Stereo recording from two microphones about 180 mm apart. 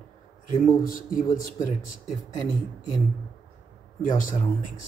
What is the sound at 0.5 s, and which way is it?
Speech, 50° left (ahead or behind).